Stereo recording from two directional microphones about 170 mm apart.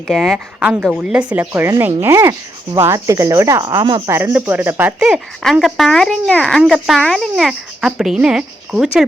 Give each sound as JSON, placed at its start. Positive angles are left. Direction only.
{"t": 0.1, "sound": "speech", "side_deg": 0}
{"t": 2.7, "sound": "rub", "side_deg": -15}
{"t": 4.1, "sound": "speech", "side_deg": -10}